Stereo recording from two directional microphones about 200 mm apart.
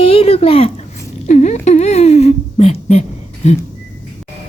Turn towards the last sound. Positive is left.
turn(degrees=35)  # may be behind; listen again after turning